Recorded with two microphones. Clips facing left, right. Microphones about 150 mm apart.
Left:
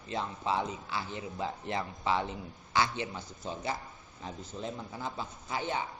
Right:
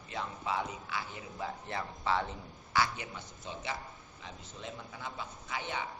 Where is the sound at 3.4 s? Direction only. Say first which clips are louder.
Left 4 dB; 40° left (ahead or behind).